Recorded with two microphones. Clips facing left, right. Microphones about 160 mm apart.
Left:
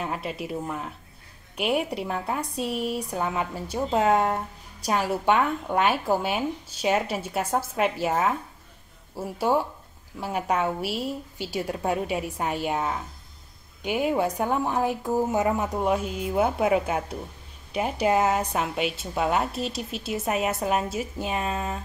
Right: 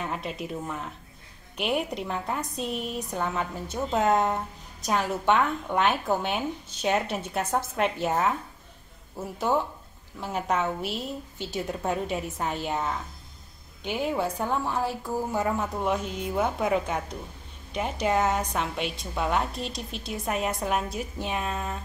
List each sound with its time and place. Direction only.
0.0 s a woman's voice: 5° left (ahead or behind)